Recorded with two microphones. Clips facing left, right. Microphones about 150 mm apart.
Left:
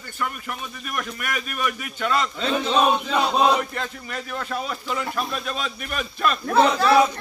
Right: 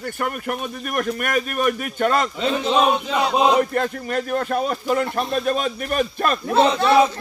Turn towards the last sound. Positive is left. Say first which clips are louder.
# right 1 dB
turn(degrees=-25)  # may be behind; listen again after turning